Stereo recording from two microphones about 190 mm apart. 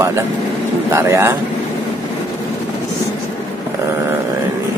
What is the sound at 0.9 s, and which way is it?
Speech, 15° right (ahead or behind).